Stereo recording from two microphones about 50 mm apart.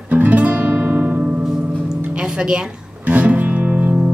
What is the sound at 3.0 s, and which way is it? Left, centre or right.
Music, right.